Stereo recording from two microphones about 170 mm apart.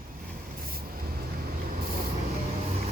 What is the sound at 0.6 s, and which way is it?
Vehicle, 60° right (ahead or behind).